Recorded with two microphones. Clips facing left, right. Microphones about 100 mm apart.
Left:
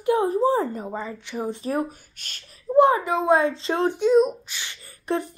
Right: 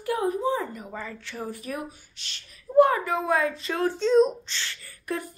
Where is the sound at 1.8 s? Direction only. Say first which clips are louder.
Left 2 dB; 45° left (ahead or behind).